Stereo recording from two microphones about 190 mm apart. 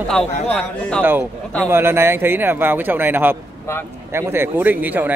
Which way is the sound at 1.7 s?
15° right (ahead or behind).